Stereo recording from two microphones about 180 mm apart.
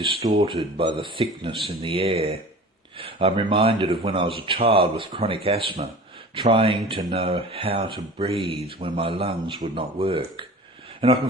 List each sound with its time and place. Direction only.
0.0 s speech: 25° right (ahead or behind)